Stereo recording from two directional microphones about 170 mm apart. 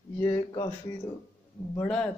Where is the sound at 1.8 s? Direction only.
5° left (ahead or behind).